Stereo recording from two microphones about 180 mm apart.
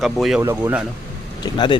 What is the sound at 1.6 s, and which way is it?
Speech, 25° left (ahead or behind).